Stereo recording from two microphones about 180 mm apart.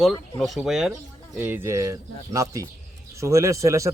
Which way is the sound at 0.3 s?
Centre (ahead or behind).